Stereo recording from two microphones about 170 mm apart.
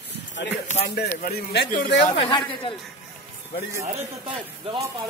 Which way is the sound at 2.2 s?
30° left (ahead or behind).